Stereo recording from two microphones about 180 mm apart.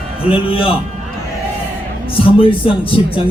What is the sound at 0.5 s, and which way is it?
Speech, 30° left (ahead or behind).